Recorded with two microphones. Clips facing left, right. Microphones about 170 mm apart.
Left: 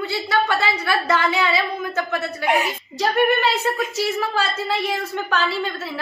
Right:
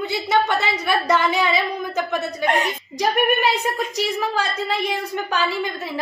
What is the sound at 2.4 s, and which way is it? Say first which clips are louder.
Speech: left 1 dB; 10° left (ahead or behind).